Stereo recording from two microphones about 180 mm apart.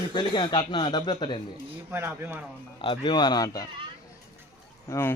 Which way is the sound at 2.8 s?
25° left (ahead or behind).